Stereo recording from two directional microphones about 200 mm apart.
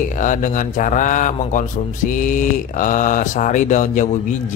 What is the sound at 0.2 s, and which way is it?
Speech, 40° left (ahead or behind).